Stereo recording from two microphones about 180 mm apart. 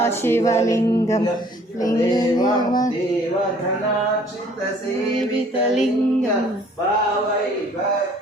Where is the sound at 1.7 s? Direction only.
20° left (ahead or behind).